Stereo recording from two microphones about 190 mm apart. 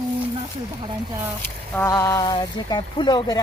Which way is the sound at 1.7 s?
15° left (ahead or behind).